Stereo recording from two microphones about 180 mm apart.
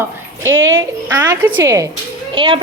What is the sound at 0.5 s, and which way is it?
Speech, 90° right.